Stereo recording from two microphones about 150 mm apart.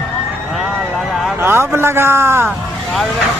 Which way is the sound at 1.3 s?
15° right (ahead or behind).